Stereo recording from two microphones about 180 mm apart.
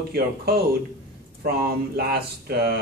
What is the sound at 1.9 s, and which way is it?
Speech, 60° right (ahead or behind).